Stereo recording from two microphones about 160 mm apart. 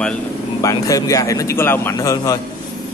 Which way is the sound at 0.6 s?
20° left (ahead or behind).